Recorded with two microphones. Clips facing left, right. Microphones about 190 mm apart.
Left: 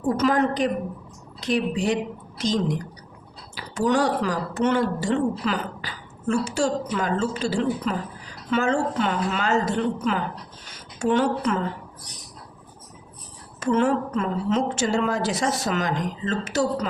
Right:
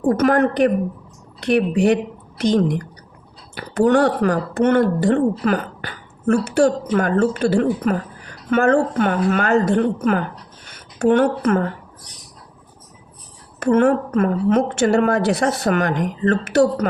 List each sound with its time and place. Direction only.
0.1 s a woman's voice: 60° right (ahead or behind)
13.6 s a woman's voice: 55° right (ahead or behind)